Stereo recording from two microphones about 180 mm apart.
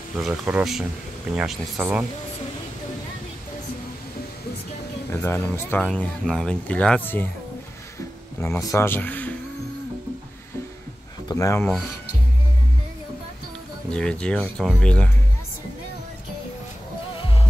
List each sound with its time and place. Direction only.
0.2 s speech: 5° right (ahead or behind)
5.1 s speech: 15° left (ahead or behind)
8.4 s speech: 15° left (ahead or behind)
11.2 s speech: 20° left (ahead or behind)
13.8 s speech: 5° left (ahead or behind)
17.2 s music: 30° left (ahead or behind)